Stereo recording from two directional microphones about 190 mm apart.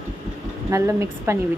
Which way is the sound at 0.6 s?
15° right (ahead or behind).